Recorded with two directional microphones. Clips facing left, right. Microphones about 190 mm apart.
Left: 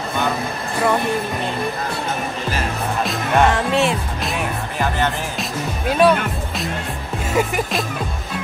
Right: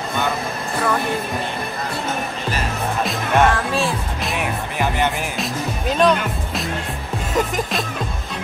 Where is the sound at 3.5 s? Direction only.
20° left (ahead or behind).